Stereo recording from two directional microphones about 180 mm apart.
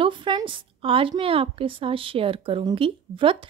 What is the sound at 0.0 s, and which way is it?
A woman's voice, 25° right (ahead or behind).